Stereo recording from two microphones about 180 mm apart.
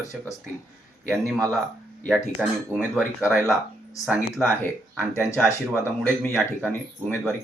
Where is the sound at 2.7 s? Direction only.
5° right (ahead or behind).